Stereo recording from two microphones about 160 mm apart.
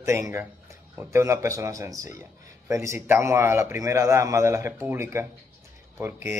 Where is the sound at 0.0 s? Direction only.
20° right (ahead or behind).